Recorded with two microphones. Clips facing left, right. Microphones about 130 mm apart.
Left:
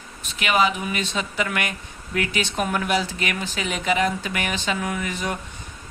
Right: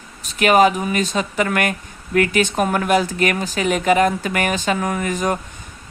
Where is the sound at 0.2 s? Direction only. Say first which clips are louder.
Right 8 dB; 45° right (ahead or behind).